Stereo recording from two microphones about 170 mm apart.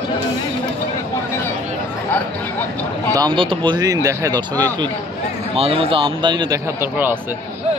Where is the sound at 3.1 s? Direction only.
25° right (ahead or behind).